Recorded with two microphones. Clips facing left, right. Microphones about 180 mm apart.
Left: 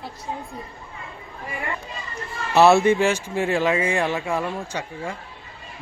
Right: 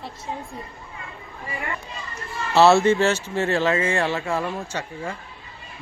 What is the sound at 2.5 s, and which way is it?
Speech, 15° left (ahead or behind).